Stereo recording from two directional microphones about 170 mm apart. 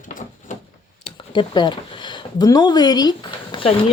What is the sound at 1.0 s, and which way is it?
Speech, 30° left (ahead or behind).